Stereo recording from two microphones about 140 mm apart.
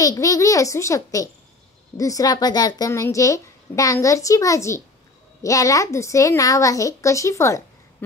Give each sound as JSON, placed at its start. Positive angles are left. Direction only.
{"t": 0.0, "sound": "speech", "side_deg": 25}